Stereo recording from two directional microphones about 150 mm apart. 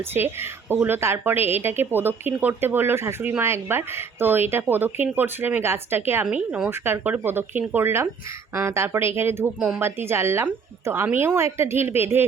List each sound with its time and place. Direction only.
0.1 s speech: 10° right (ahead or behind)